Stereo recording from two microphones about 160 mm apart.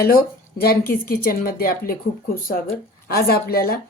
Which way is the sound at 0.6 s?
70° left (ahead or behind).